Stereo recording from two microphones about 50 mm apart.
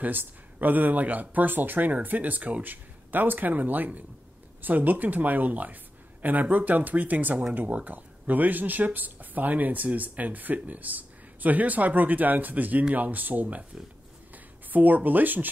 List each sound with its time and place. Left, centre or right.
0.0 s speech: right